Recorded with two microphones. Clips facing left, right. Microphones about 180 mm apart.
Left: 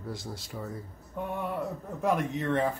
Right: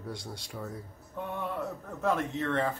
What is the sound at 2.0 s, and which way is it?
Speech, 15° left (ahead or behind).